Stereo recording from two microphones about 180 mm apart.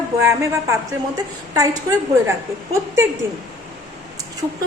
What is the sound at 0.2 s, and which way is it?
A woman's voice, 15° right (ahead or behind).